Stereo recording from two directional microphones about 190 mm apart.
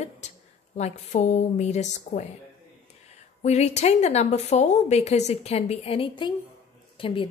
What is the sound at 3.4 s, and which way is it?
A woman's voice, 35° left (ahead or behind).